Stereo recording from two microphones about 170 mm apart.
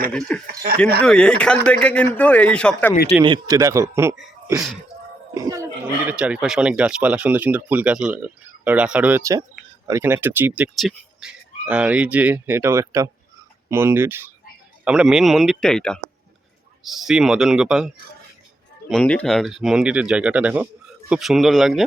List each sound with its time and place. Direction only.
0.1 s a man's voice: 5° left (ahead or behind)
3.2 s speech: 25° right (ahead or behind)
5.3 s speech: 20° right (ahead or behind); by 21.8 s centre (ahead or behind)